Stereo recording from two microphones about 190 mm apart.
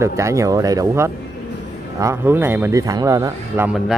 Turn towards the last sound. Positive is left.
turn(degrees=-10)  # may be behind; listen again after turning